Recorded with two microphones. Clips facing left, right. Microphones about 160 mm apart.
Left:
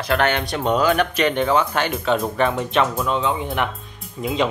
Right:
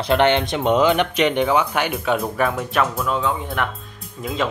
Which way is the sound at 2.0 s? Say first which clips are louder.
Left 2 dB; centre (ahead or behind).